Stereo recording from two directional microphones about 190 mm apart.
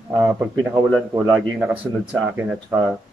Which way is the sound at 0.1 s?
10° right (ahead or behind).